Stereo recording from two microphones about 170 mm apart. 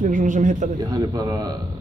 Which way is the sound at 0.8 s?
25° right (ahead or behind).